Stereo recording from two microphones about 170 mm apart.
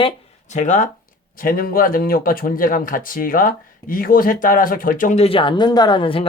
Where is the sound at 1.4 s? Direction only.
55° left (ahead or behind).